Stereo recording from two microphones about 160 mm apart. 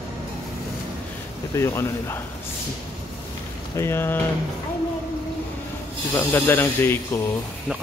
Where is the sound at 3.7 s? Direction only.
15° left (ahead or behind).